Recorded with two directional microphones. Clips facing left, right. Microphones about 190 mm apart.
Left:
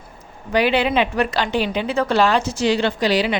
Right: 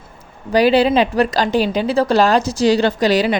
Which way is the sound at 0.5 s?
35° right (ahead or behind).